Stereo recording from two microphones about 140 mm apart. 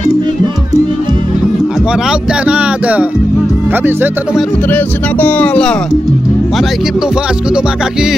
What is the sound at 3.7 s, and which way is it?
Speech, 15° right (ahead or behind).